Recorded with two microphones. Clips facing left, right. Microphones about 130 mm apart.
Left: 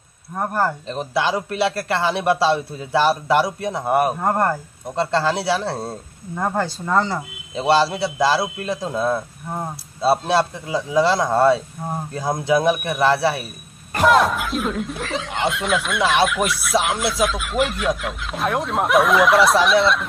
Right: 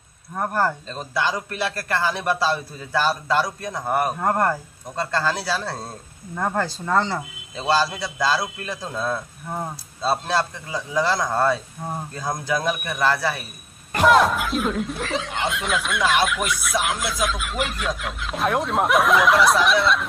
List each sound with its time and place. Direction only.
0.3 s speech: 5° left (ahead or behind)
0.7 s a man's voice: 20° left (ahead or behind)
4.2 s speech: 5° left (ahead or behind)
4.9 s a man's voice: 25° left (ahead or behind)
6.3 s speech: 10° left (ahead or behind)
7.5 s a man's voice: 25° left (ahead or behind)
14.0 s speech: centre (ahead or behind)